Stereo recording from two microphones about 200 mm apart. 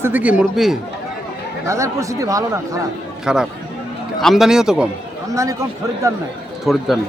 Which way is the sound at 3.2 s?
5° right (ahead or behind).